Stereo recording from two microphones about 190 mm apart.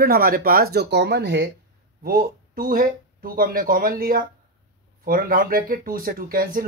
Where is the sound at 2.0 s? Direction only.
50° right (ahead or behind).